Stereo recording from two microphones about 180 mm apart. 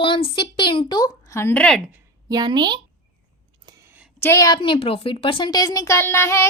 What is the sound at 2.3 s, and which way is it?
Speech, 25° right (ahead or behind).